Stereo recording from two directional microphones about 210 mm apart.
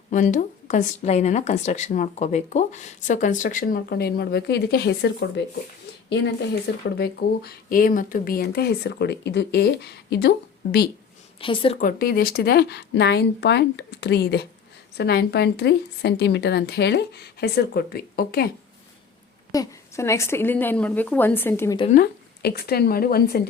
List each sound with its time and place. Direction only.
0.1 s speech: 35° left (ahead or behind); by 5.5 s 55° left (ahead or behind)
6.9 s speech: 50° left (ahead or behind)
11.3 s a woman's voice: 25° left (ahead or behind)
11.8 s speech: 40° left (ahead or behind)
19.5 s a woman's voice: 15° left (ahead or behind)
21.8 s speech: 35° left (ahead or behind)
22.0 s speech: 50° left (ahead or behind)